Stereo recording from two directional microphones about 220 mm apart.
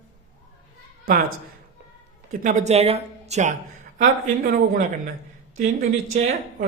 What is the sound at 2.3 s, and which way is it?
Speech, 35° right (ahead or behind).